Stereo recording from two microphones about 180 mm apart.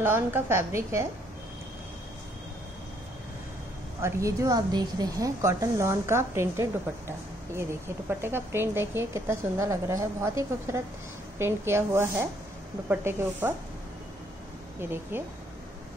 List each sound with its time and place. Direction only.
0.0 s a woman's voice: 10° right (ahead or behind)
4.0 s a woman's voice: 15° right (ahead or behind)
14.8 s a woman's voice: 10° right (ahead or behind)